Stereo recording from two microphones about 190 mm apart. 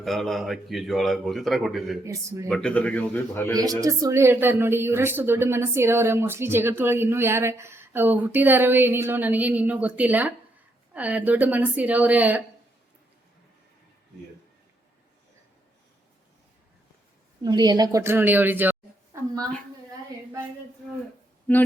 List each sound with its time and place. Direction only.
0.0 s a man's voice: centre (ahead or behind)
2.0 s speech: 15° right (ahead or behind)
2.5 s a man's voice: 5° left (ahead or behind)
3.5 s speech: 20° right (ahead or behind)
17.4 s a woman's voice: 20° right (ahead or behind)